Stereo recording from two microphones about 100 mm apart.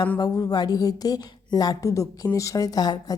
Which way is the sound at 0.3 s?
40° left (ahead or behind).